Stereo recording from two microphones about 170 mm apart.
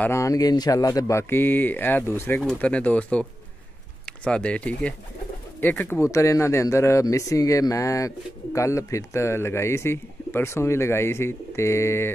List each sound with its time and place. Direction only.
0.0 s a man's voice: 15° left (ahead or behind)